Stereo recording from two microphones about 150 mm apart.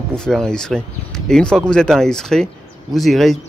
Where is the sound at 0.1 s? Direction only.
5° left (ahead or behind).